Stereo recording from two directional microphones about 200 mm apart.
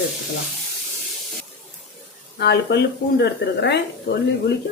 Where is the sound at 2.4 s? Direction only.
55° left (ahead or behind).